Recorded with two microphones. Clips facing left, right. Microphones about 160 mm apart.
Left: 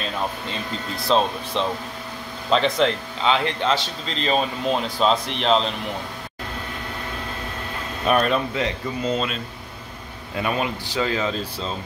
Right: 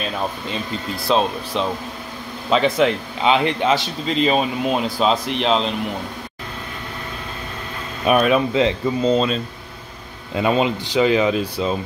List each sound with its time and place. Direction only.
1.0 s speech: 5° right (ahead or behind)
3.3 s speech: 15° right (ahead or behind)
8.0 s speech: 10° right (ahead or behind)
8.5 s speech: 30° right (ahead or behind)